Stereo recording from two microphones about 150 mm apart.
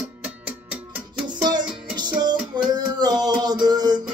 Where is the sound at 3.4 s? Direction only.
25° right (ahead or behind).